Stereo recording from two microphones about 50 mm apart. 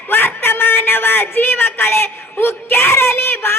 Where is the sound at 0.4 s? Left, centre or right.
Left.